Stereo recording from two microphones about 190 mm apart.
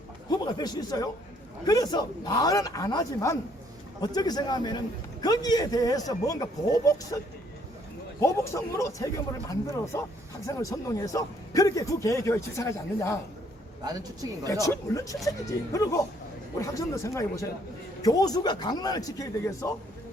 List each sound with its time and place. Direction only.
0.3 s a sound: 20° left (ahead or behind)
1.6 s speech: 20° left (ahead or behind)
8.2 s a man's voice: 15° left (ahead or behind)
14.6 s a man's voice: 15° left (ahead or behind)